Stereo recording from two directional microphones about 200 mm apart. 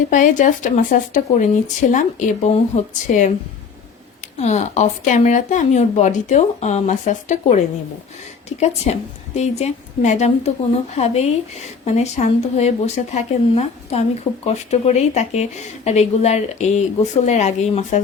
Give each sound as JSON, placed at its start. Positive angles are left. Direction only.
{"t": 0.1, "sound": "speech", "side_deg": 40}
{"t": 4.4, "sound": "speech", "side_deg": 35}